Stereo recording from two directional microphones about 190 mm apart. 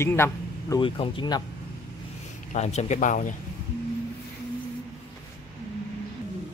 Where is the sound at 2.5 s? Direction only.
35° left (ahead or behind).